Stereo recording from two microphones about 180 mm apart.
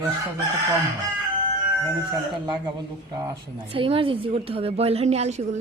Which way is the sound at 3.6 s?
30° right (ahead or behind).